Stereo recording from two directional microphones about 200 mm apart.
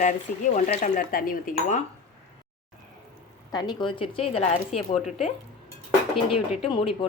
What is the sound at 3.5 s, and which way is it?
Speech, 20° left (ahead or behind).